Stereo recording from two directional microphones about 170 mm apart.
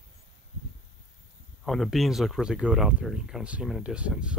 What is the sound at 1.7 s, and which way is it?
Speech, centre (ahead or behind).